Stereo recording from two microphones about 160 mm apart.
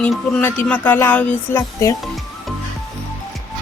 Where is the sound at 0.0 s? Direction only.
5° left (ahead or behind).